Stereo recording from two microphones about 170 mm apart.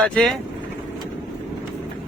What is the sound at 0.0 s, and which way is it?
Speech, centre (ahead or behind).